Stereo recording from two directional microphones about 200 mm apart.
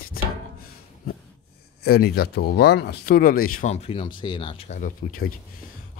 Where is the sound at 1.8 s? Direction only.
50° left (ahead or behind).